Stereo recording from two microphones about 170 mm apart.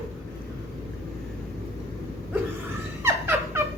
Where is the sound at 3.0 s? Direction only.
15° right (ahead or behind).